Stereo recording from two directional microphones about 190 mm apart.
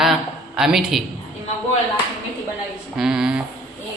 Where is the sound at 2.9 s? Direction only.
5° right (ahead or behind).